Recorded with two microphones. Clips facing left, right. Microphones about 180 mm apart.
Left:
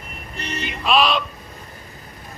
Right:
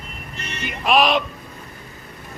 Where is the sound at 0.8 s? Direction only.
15° right (ahead or behind).